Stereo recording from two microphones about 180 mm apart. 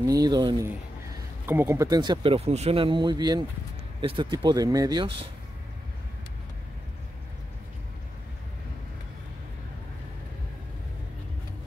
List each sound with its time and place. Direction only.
0.0 s speech: 20° right (ahead or behind)
1.4 s speech: 10° right (ahead or behind)